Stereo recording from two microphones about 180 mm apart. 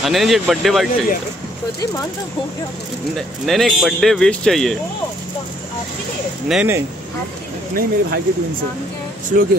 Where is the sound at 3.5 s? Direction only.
Centre (ahead or behind).